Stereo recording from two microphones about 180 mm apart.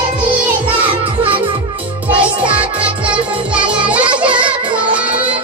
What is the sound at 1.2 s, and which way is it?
Music, 30° right (ahead or behind).